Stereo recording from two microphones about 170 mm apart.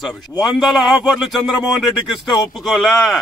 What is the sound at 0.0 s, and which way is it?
Speech, centre (ahead or behind).